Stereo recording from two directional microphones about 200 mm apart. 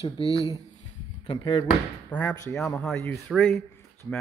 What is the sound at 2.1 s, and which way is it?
A man's voice, 10° left (ahead or behind).